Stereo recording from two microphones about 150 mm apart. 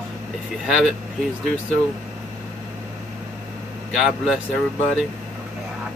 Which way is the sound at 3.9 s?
Centre (ahead or behind).